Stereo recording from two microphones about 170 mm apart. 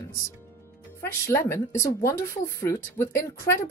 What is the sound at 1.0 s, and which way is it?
Speech, 15° left (ahead or behind).